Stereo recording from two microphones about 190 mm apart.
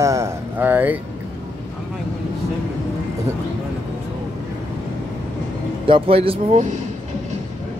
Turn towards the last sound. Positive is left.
turn(degrees=-35)  # may be behind; listen again after turning